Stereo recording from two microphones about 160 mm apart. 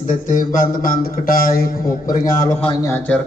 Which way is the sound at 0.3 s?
55° left (ahead or behind).